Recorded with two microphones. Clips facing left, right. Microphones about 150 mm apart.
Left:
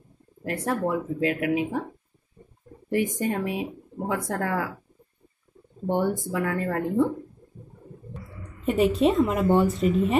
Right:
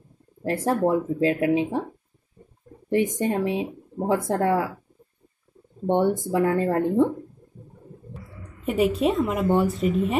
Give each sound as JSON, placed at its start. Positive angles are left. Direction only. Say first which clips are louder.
{"t": 0.4, "sound": "speech", "louder": "right 4 dB", "side_deg": -30}
{"t": 2.9, "sound": "speech", "louder": "right 3 dB", "side_deg": -20}
{"t": 5.9, "sound": "speech", "louder": "right 4 dB", "side_deg": -25}
{"t": 8.1, "sound": "speech", "louder": "left 1 dB", "side_deg": -5}